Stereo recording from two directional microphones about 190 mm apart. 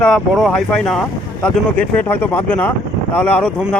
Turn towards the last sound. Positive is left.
turn(degrees=10)  # may be behind; listen again after turning